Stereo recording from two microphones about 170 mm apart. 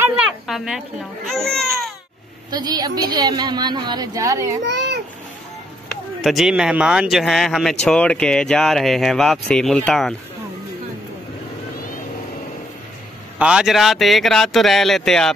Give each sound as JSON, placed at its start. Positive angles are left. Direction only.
{"t": 0.0, "sound": "speech", "side_deg": -5}
{"t": 2.5, "sound": "speech", "side_deg": -25}
{"t": 4.6, "sound": "a sound", "side_deg": -90}
{"t": 6.2, "sound": "speech", "side_deg": 0}
{"t": 13.4, "sound": "speech", "side_deg": -5}